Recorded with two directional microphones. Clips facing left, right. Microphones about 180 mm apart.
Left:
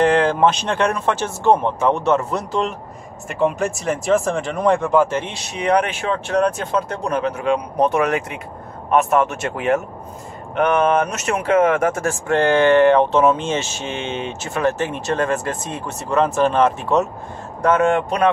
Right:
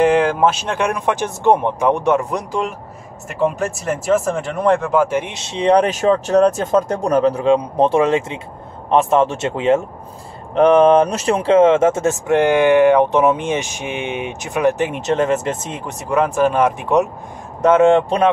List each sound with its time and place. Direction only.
0.0 s speech: 10° right (ahead or behind)
3.3 s speech: centre (ahead or behind); by 18.3 s 25° right (ahead or behind)